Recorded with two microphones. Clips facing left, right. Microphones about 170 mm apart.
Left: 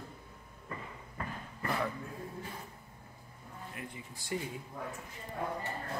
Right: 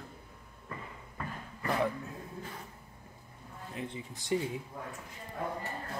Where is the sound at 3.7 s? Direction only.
25° right (ahead or behind).